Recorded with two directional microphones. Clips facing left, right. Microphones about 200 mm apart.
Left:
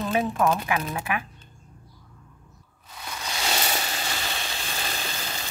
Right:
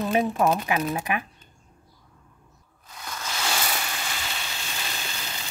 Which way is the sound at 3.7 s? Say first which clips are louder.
Left 2 dB; 30° left (ahead or behind).